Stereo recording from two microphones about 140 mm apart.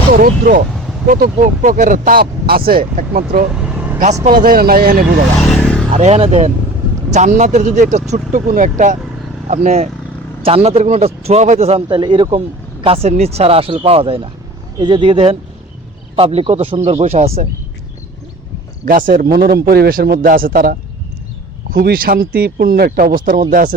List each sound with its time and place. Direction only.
0.1 s speech: 85° right
3.5 s vehicle: 10° right (ahead or behind)
4.0 s speech: 65° right (ahead or behind); by 5.0 s 90° right
5.4 s vehicle: 10° left (ahead or behind)
5.9 s speech: 55° right (ahead or behind)
7.1 s speech: 60° right (ahead or behind)
8.3 s speech: 70° right (ahead or behind)
9.5 s speech: 60° right (ahead or behind)
10.4 s speech: 45° right (ahead or behind)
11.9 s speech: 35° right (ahead or behind)
18.9 s speech: 85° right